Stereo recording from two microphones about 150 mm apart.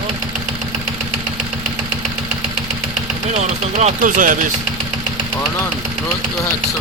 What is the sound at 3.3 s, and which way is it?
Speech, 55° right (ahead or behind).